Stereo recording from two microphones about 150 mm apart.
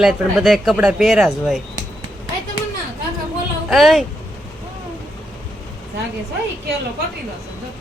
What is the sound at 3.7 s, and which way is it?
Speech, centre (ahead or behind).